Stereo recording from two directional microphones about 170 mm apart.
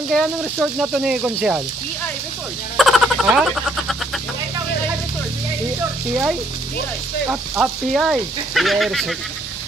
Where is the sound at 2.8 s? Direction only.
Centre (ahead or behind).